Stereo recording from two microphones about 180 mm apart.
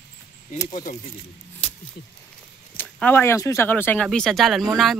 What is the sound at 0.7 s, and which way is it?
Speech, 50° left (ahead or behind).